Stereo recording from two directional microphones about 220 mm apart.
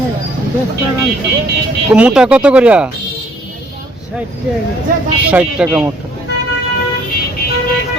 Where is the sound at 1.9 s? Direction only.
5° right (ahead or behind).